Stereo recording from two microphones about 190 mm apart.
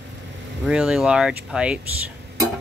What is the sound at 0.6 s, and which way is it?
Speech, 5° right (ahead or behind).